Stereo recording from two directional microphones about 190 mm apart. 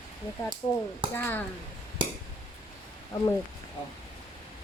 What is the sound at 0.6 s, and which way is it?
Speech, 30° left (ahead or behind).